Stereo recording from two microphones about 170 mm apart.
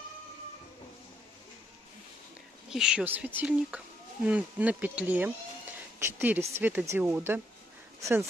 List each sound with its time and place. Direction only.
2.7 s speech: 5° right (ahead or behind)